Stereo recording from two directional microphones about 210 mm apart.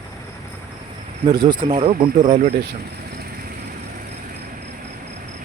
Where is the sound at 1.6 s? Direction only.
30° right (ahead or behind).